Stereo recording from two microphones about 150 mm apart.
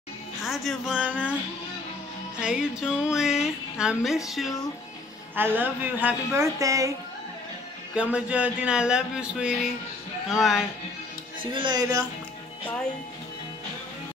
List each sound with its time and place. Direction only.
0.4 s speech: centre (ahead or behind)
2.4 s speech: 5° right (ahead or behind)
5.3 s speech: 15° right (ahead or behind)
7.9 s speech: 5° right (ahead or behind)
11.5 s speech: 30° right (ahead or behind)